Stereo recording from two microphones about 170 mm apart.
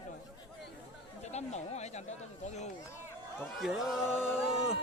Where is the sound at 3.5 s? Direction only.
Centre (ahead or behind).